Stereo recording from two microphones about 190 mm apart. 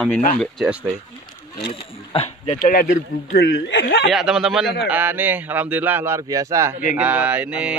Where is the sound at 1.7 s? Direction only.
30° left (ahead or behind); by 2.9 s 50° left (ahead or behind).